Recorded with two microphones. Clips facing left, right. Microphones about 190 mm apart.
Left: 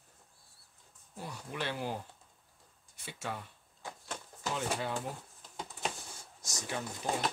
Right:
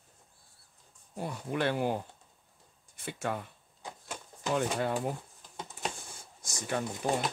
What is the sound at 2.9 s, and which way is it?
Speech, 55° right (ahead or behind).